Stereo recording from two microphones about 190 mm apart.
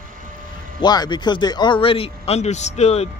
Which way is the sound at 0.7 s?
20° left (ahead or behind).